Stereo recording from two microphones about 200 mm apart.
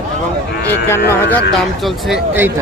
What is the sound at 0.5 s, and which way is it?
Cattle, 50° left (ahead or behind).